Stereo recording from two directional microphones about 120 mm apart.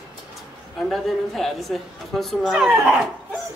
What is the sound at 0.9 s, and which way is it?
A woman's voice, centre (ahead or behind).